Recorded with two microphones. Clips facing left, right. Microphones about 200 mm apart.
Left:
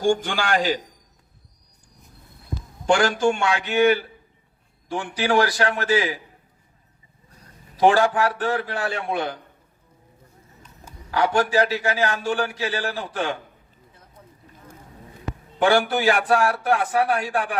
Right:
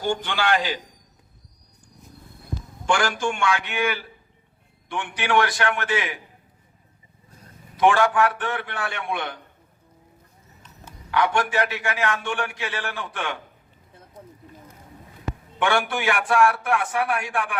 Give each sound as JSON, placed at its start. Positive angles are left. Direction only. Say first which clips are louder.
{"t": 0.0, "sound": "a man's voice", "louder": "left 3 dB", "side_deg": 45}
{"t": 2.8, "sound": "a man's voice", "louder": "left 5 dB", "side_deg": 40}
{"t": 7.8, "sound": "a man's voice", "louder": "left 1 dB", "side_deg": 35}
{"t": 11.1, "sound": "a man's voice", "louder": "left 2 dB", "side_deg": 35}
{"t": 15.5, "sound": "a man's voice", "louder": "left 4 dB", "side_deg": 35}